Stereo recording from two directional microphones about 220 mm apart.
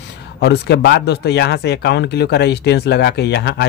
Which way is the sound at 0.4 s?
50° left (ahead or behind).